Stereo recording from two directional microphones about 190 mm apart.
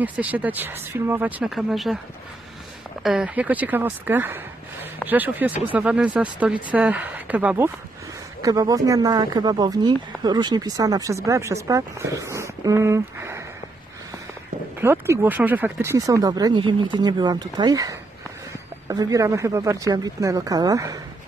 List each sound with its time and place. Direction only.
0.0 s speech: 10° right (ahead or behind)
3.0 s speech: 5° right (ahead or behind)
14.8 s speech: 10° right (ahead or behind)